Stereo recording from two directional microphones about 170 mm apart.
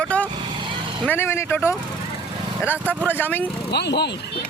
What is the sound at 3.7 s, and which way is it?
Speech, 75° left (ahead or behind).